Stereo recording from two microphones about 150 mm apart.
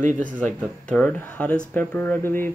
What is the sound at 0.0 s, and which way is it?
Speech, 55° right (ahead or behind).